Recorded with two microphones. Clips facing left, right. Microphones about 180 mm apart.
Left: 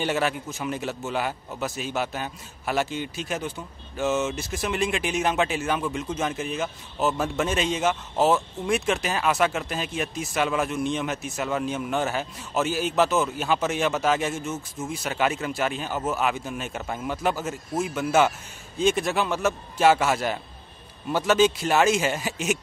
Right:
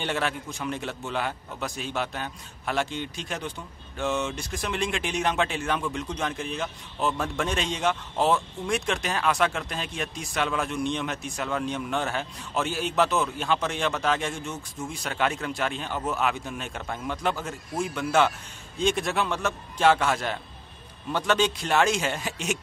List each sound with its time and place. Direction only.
0.0 s a man's voice: 5° left (ahead or behind)